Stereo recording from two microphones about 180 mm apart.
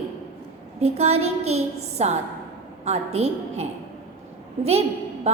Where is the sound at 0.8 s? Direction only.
35° right (ahead or behind).